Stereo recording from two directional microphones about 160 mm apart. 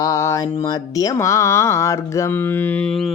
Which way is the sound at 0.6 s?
20° left (ahead or behind).